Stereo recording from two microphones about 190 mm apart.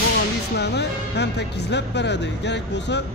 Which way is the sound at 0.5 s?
60° left (ahead or behind).